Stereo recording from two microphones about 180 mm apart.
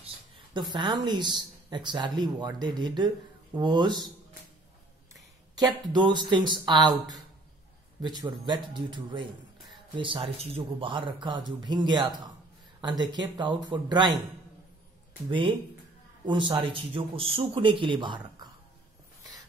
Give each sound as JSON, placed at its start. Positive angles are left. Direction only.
{"t": 0.6, "sound": "a woman's voice", "side_deg": -25}
{"t": 5.6, "sound": "a woman's voice", "side_deg": -25}
{"t": 15.2, "sound": "a woman's voice", "side_deg": -30}